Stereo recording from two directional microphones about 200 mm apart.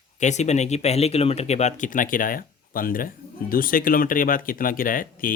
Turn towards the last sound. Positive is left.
turn(degrees=45)  # may be behind; listen again after turning